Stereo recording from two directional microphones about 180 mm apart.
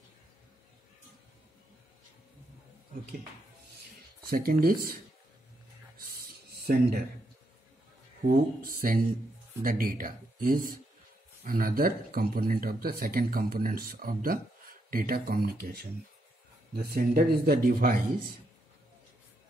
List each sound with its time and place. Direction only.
4.3 s speech: 55° right (ahead or behind)
6.6 s speech: 55° right (ahead or behind)
8.2 s speech: 50° right (ahead or behind)
16.7 s speech: 55° right (ahead or behind)